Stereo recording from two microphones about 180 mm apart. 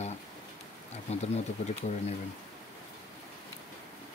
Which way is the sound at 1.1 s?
35° left (ahead or behind).